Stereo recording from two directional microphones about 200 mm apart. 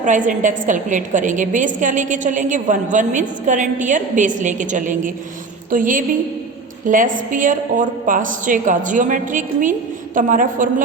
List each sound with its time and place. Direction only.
0.0 s a woman's voice: 40° right (ahead or behind)